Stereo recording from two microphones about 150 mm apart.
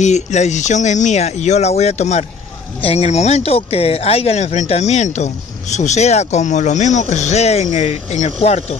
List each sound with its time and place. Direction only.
0.0 s speech: 50° left (ahead or behind)